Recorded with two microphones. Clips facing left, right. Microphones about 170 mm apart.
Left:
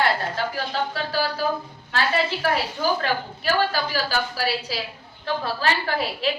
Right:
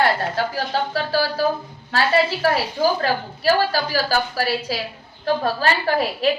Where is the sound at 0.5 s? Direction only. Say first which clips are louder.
Right 4 dB; 40° right (ahead or behind).